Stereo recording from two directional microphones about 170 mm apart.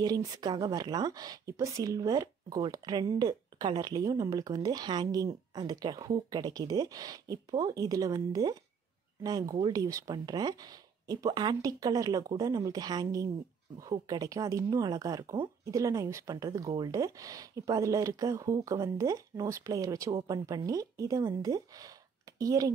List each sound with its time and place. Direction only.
0.0 s speech: 25° right (ahead or behind)